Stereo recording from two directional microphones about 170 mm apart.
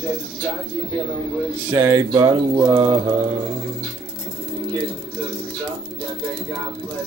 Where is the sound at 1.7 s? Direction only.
15° right (ahead or behind).